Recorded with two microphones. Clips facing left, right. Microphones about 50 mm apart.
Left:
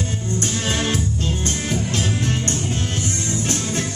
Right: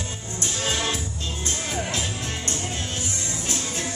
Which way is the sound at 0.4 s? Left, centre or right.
Left.